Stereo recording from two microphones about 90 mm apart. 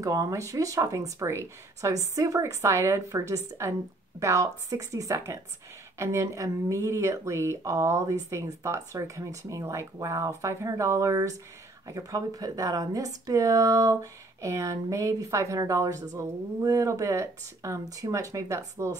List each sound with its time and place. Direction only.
0.0 s speech: 40° right (ahead or behind)